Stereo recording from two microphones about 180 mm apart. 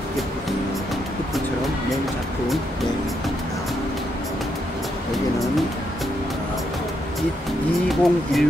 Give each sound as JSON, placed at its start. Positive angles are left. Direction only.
{"t": 7.9, "sound": "speech", "side_deg": 0}